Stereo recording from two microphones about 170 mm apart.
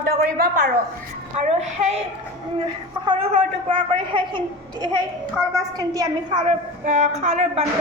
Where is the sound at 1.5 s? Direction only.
40° right (ahead or behind).